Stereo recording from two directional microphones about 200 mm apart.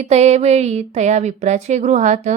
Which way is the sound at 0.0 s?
35° right (ahead or behind).